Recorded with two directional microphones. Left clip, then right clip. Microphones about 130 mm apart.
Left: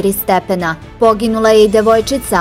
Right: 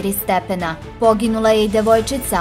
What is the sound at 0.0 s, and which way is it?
A woman's voice, 35° left (ahead or behind).